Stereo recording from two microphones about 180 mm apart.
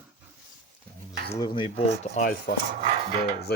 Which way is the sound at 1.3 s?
25° left (ahead or behind).